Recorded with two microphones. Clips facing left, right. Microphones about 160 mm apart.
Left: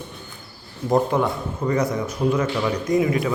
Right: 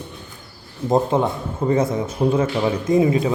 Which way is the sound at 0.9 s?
25° right (ahead or behind).